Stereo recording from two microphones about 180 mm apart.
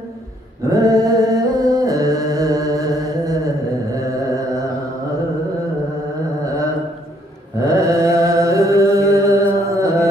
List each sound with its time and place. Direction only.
0.7 s music: 20° right (ahead or behind)
6.4 s mantra: 20° right (ahead or behind)